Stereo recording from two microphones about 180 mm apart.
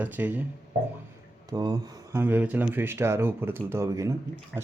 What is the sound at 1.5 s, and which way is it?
Speech, 20° right (ahead or behind).